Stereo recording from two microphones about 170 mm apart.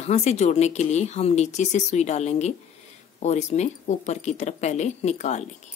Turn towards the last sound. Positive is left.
turn(degrees=40)  # may be behind; listen again after turning